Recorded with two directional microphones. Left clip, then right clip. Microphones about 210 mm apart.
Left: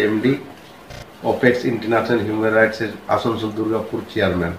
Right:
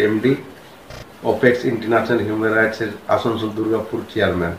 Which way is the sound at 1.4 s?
Centre (ahead or behind).